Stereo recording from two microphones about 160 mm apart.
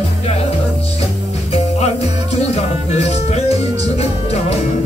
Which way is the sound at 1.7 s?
40° left (ahead or behind).